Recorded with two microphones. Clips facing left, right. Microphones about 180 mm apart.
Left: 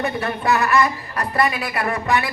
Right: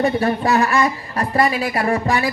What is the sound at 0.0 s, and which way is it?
A woman's voice, 30° right (ahead or behind).